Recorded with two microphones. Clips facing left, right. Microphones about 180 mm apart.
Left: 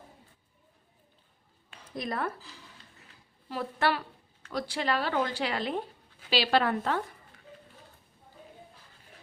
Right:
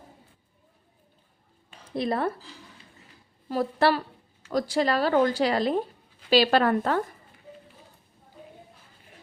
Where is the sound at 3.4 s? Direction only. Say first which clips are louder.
Right 6 dB; 40° right (ahead or behind).